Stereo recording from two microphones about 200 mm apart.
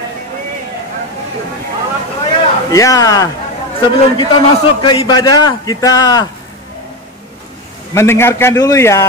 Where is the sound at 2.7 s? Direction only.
15° left (ahead or behind).